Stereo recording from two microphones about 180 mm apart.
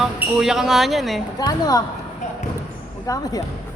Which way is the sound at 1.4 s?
20° left (ahead or behind).